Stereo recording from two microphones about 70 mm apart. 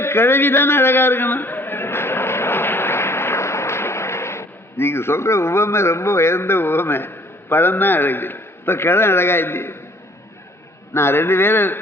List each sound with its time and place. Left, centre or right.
0.0 s a man's voice: left
10.9 s a man's voice: left